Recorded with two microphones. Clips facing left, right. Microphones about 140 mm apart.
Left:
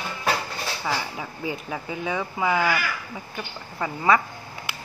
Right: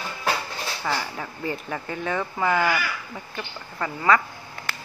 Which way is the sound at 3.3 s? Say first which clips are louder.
Even; 15° left (ahead or behind).